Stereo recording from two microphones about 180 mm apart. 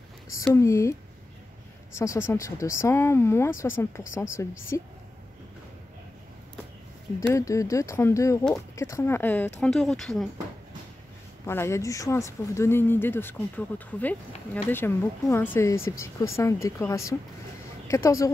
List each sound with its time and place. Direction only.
0.4 s speech: 15° left (ahead or behind)
2.1 s speech: 15° left (ahead or behind)
7.2 s speech: 20° left (ahead or behind); by 10.2 s centre (ahead or behind)
11.4 s speech: 15° left (ahead or behind)